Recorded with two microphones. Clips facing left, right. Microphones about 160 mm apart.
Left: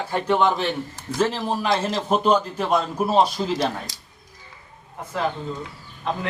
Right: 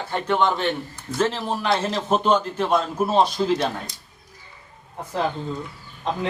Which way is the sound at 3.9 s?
90° left.